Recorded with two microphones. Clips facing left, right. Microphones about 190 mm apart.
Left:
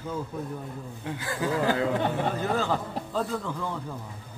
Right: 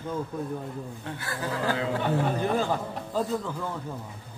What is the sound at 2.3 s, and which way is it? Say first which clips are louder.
Speech: right 1 dB; 15° right (ahead or behind).